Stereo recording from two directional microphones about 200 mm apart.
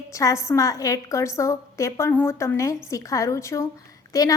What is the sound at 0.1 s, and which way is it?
A woman's voice, 15° left (ahead or behind).